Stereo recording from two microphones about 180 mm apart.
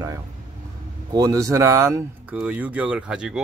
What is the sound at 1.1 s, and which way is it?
A man's voice, 20° right (ahead or behind).